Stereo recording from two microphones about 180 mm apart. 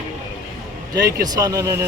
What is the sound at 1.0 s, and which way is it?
Speech, 20° right (ahead or behind).